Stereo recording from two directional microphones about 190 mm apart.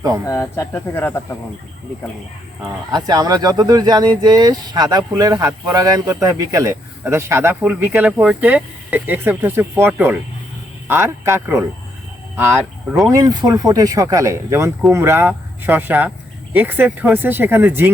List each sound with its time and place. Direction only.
0.3 s speech: 15° left (ahead or behind)
2.9 s speech: 20° right (ahead or behind)